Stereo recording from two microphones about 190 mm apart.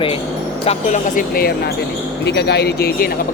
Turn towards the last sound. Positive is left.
turn(degrees=55)  # may be behind; listen again after turning